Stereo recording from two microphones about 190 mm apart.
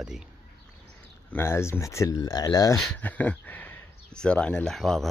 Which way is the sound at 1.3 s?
15° left (ahead or behind).